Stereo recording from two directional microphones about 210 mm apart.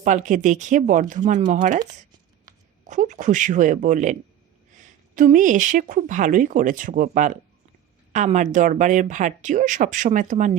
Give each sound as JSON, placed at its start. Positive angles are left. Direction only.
{"t": 0.0, "sound": "speech", "side_deg": -35}
{"t": 2.5, "sound": "speech", "side_deg": -40}